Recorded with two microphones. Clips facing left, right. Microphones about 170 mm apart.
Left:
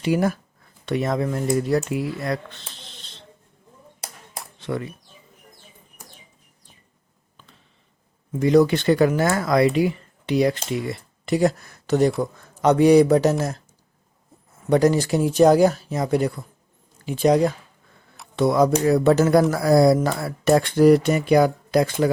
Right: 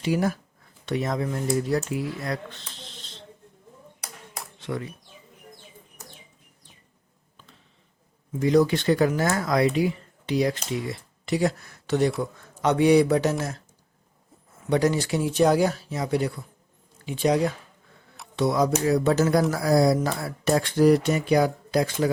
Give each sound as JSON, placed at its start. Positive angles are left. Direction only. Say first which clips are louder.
{"t": 0.0, "sound": "speech", "louder": "left 3 dB", "side_deg": 60}
{"t": 8.3, "sound": "speech", "louder": "left 4 dB", "side_deg": 60}
{"t": 10.7, "sound": "speech", "louder": "left 3 dB", "side_deg": 55}
{"t": 14.7, "sound": "speech", "louder": "left 5 dB", "side_deg": 45}
{"t": 18.3, "sound": "speech", "louder": "left 4 dB", "side_deg": 55}